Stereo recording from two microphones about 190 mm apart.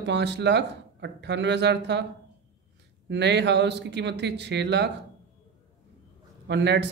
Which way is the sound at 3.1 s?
65° right (ahead or behind).